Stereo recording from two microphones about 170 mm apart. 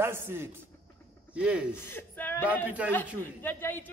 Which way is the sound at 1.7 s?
15° left (ahead or behind).